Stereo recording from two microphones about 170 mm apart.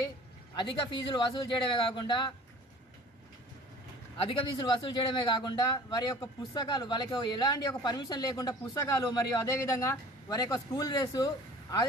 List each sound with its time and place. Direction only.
1.1 s a man's voice: 25° left (ahead or behind)
4.2 s a man's voice: 30° left (ahead or behind)